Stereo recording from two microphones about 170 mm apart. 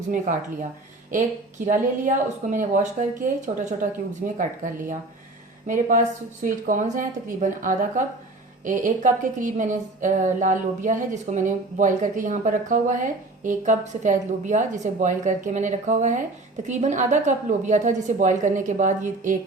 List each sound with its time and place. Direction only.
1.1 s a woman's voice: 45° right (ahead or behind)